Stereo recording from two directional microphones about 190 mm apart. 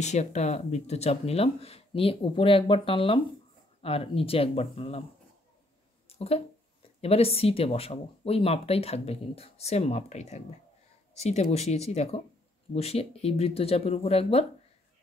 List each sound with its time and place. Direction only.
0.0 s speech: 35° left (ahead or behind)
6.0 s a sound: 30° left (ahead or behind)
7.0 s speech: 30° left (ahead or behind)